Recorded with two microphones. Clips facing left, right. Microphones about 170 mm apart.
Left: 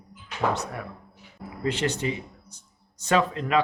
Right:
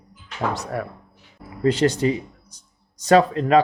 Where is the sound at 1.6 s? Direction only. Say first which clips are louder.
Right 8 dB; 35° right (ahead or behind).